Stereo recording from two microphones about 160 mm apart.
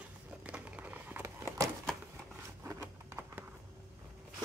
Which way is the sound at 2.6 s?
15° right (ahead or behind).